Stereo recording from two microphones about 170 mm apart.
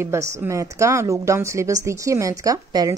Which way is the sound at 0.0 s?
15° right (ahead or behind).